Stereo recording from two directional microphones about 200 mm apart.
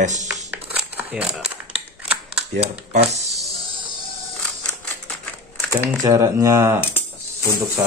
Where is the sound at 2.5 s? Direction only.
35° right (ahead or behind).